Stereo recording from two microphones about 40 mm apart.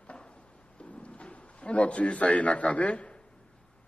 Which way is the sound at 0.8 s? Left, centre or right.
Left.